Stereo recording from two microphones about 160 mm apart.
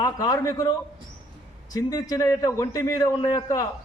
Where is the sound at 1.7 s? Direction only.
25° left (ahead or behind).